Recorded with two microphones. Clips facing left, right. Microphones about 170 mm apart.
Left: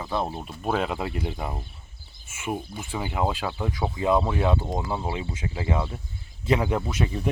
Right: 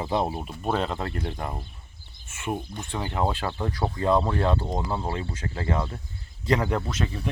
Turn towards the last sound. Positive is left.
turn(degrees=10)  # may be behind; listen again after turning